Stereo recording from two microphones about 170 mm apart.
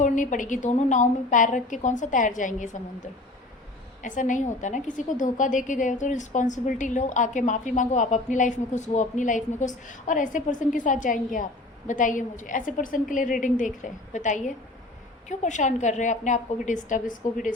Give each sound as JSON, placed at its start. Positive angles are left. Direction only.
{"t": 0.0, "sound": "a woman's voice", "side_deg": 50}